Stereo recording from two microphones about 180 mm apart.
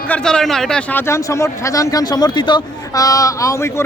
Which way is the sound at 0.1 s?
5° left (ahead or behind).